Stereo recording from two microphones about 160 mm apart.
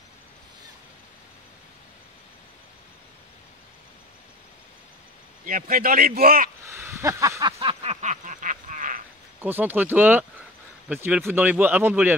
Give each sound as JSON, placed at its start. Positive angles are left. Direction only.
{"t": 5.4, "sound": "a man's voice", "side_deg": -60}
{"t": 6.6, "sound": "speech", "side_deg": -15}
{"t": 7.5, "sound": "a sound", "side_deg": -40}
{"t": 9.4, "sound": "speech", "side_deg": -10}